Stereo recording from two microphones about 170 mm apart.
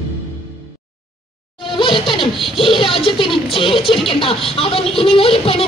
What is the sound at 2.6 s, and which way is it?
Speech, 30° left (ahead or behind).